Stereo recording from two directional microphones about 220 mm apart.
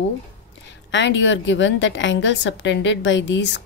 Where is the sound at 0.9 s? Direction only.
55° left (ahead or behind).